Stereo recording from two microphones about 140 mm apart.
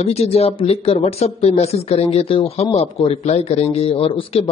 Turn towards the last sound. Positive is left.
turn(degrees=40)  # may be behind; listen again after turning